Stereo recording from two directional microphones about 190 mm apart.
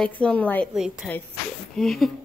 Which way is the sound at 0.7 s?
5° right (ahead or behind).